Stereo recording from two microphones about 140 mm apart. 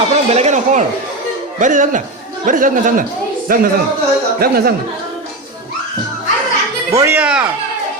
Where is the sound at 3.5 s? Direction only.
90° right.